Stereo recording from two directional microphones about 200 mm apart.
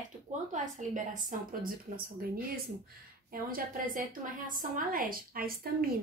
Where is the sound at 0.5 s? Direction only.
40° right (ahead or behind).